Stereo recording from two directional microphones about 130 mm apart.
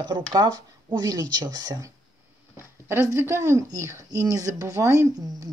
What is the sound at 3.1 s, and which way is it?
Speech, 20° right (ahead or behind).